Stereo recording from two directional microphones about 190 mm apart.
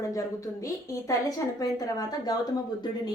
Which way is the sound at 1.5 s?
20° left (ahead or behind).